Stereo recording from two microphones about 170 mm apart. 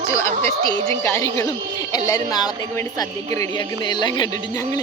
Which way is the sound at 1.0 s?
15° left (ahead or behind).